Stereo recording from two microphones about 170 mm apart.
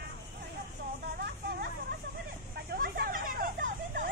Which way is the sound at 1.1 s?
65° right (ahead or behind).